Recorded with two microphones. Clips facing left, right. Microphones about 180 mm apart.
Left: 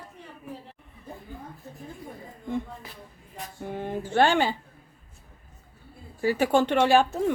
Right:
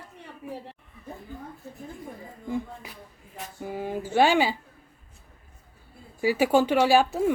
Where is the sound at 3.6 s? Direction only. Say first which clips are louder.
Right 1 dB; 5° right (ahead or behind).